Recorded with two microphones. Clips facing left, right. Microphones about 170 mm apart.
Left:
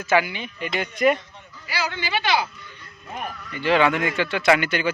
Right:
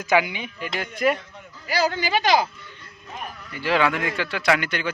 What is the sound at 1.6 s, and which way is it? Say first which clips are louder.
Speech: right 5 dB; 40° right (ahead or behind).